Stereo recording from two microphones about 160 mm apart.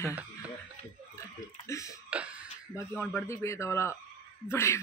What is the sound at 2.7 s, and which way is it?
A man's voice, 15° left (ahead or behind).